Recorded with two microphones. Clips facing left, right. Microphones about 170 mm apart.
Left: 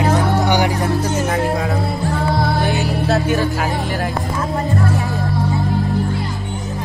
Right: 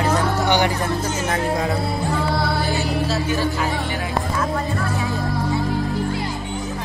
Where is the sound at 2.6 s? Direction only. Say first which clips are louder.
Left 3 dB; 65° left (ahead or behind).